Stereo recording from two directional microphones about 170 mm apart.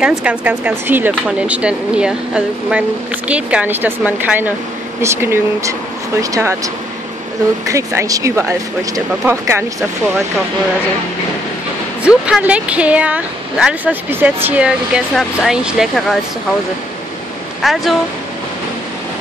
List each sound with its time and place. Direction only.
0.0 s speech: 5° right (ahead or behind)
7.7 s speech: 15° right (ahead or behind)
12.0 s speech: 5° right (ahead or behind)
17.6 s speech: centre (ahead or behind)